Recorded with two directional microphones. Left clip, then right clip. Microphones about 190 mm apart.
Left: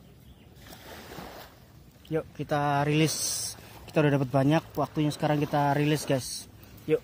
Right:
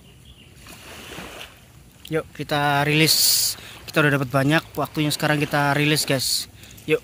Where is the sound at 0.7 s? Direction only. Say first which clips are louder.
Right 6 dB; 35° right (ahead or behind).